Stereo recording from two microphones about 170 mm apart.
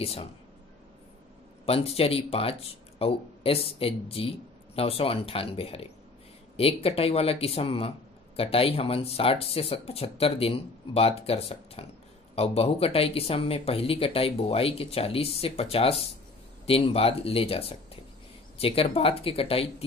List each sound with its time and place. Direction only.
0.0 s speech: 35° left (ahead or behind)
1.7 s speech: 35° left (ahead or behind)